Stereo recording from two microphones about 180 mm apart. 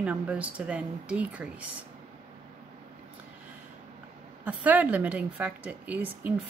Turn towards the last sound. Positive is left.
turn(degrees=-10)  # may be behind; listen again after turning